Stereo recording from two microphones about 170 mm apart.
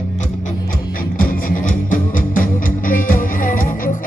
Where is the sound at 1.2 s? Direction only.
55° left (ahead or behind).